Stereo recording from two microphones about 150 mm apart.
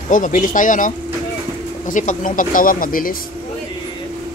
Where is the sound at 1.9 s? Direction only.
60° left (ahead or behind).